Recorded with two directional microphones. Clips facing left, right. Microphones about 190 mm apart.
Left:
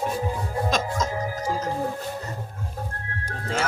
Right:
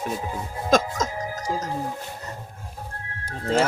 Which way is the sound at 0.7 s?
50° right (ahead or behind).